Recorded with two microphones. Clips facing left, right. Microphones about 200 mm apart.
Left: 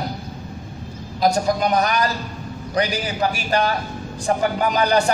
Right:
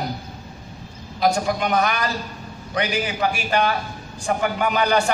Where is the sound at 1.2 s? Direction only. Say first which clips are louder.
Left 2 dB; 40° left (ahead or behind).